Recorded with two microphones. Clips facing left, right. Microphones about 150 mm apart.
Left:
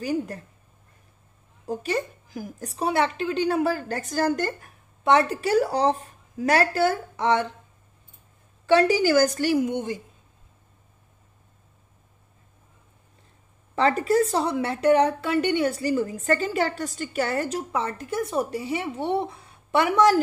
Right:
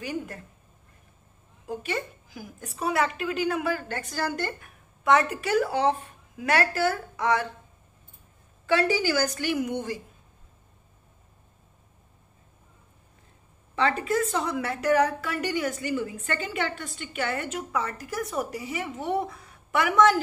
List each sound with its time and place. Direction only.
0.0 s a woman's voice: 40° left (ahead or behind)
1.7 s a woman's voice: 40° left (ahead or behind)
5.0 s a woman's voice: 30° left (ahead or behind)
8.6 s a woman's voice: 40° left (ahead or behind)
9.7 s a woman's voice: 20° left (ahead or behind)
13.7 s a woman's voice: 40° left (ahead or behind)